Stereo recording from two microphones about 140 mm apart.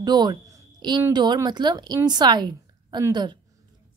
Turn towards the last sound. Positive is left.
turn(degrees=-35)  # may be behind; listen again after turning